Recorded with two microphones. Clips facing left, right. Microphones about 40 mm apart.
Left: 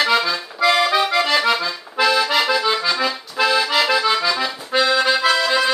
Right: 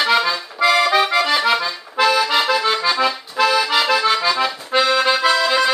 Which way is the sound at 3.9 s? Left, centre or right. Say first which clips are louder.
Right 1 dB; centre.